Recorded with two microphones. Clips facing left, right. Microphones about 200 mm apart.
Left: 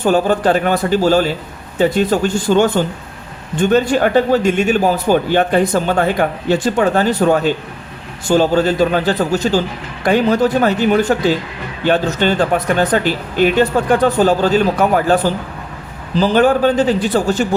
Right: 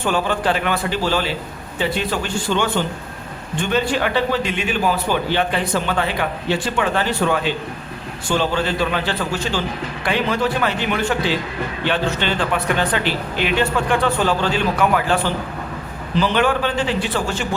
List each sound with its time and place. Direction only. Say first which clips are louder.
0.0 s a man's voice: left 7 dB; 40° left (ahead or behind)